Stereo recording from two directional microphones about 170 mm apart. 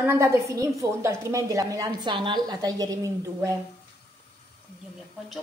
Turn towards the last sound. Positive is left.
turn(degrees=-20)  # may be behind; listen again after turning